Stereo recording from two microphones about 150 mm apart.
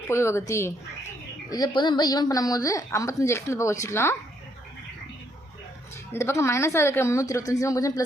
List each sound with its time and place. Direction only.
0.1 s a woman's voice: 20° left (ahead or behind)
6.1 s a woman's voice: 15° left (ahead or behind)